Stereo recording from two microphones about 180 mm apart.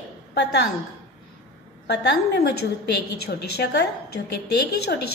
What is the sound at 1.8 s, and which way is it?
A woman's voice, 65° left (ahead or behind).